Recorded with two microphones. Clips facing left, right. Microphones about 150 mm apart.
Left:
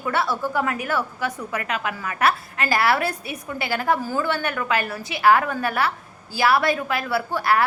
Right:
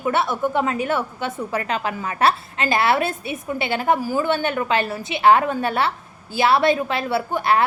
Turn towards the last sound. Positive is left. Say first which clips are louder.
# right 2 dB
turn(degrees=-25)  # may be behind; listen again after turning